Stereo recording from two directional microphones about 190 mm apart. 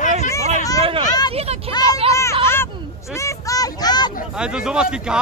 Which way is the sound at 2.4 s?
10° left (ahead or behind).